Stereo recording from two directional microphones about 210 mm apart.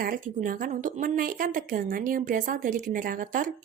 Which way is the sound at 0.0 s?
40° right (ahead or behind).